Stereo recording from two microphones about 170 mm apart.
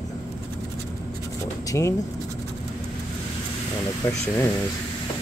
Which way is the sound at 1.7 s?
15° left (ahead or behind).